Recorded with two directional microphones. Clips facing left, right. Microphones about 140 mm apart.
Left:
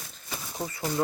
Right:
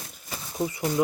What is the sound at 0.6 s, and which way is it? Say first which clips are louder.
Speech: right 4 dB; 15° right (ahead or behind).